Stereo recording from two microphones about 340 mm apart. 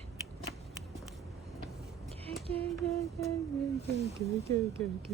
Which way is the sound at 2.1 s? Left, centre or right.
Centre.